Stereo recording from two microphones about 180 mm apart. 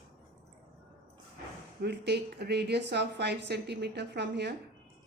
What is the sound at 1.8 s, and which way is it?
A woman's voice, 70° right (ahead or behind).